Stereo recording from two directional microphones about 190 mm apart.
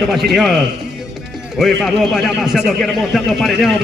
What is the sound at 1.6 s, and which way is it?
A man's voice, centre (ahead or behind).